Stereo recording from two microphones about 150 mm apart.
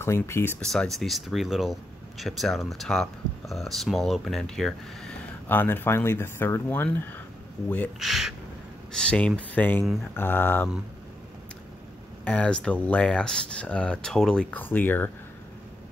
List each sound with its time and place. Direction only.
0.0 s speech: 15° left (ahead or behind)
0.6 s speech: 5° left (ahead or behind)
8.0 s speech: centre (ahead or behind)
12.3 s speech: 10° left (ahead or behind)